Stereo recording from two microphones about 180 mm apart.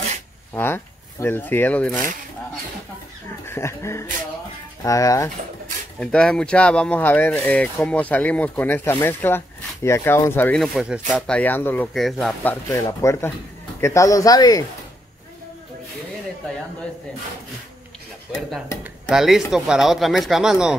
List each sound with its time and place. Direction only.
0.6 s speech: 10° left (ahead or behind)
3.4 s speech: 15° left (ahead or behind)
5.9 s speech: 5° left (ahead or behind)
12.7 s speech: 15° left (ahead or behind)
19.0 s speech: centre (ahead or behind)